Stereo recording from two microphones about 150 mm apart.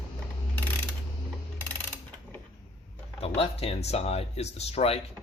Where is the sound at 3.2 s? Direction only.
40° left (ahead or behind).